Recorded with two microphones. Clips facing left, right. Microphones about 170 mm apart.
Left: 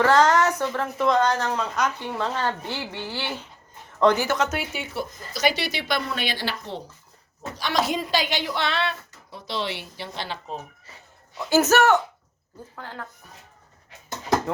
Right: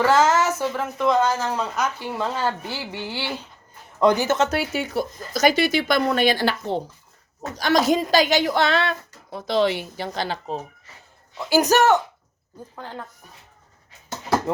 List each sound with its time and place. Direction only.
0.0 s a woman's voice: 5° right (ahead or behind); by 4.4 s 20° right (ahead or behind)
4.4 s speech: 40° right (ahead or behind)
11.5 s a woman's voice: 15° right (ahead or behind)